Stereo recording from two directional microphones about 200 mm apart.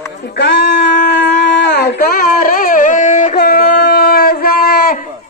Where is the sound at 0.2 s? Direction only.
55° left (ahead or behind).